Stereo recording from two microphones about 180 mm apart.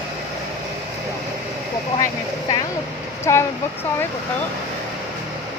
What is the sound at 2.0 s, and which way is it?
Speech, 20° left (ahead or behind).